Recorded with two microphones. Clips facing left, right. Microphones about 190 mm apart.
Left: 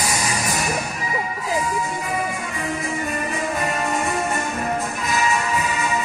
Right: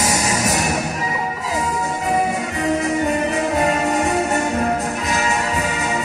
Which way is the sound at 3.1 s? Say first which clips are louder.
Right 6 dB; 75° right (ahead or behind).